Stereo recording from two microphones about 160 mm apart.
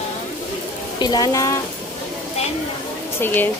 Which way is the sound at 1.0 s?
25° left (ahead or behind).